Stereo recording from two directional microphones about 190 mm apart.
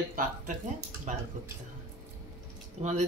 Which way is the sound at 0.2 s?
50° right (ahead or behind).